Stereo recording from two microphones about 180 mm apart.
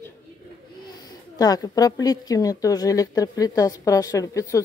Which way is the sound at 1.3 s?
20° left (ahead or behind).